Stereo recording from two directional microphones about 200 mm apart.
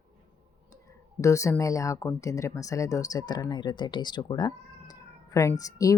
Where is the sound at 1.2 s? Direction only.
15° left (ahead or behind).